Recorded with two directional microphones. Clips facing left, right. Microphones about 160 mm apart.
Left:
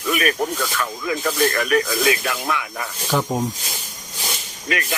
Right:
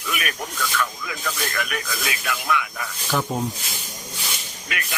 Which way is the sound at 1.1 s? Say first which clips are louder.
Left 8 dB; 40° left (ahead or behind).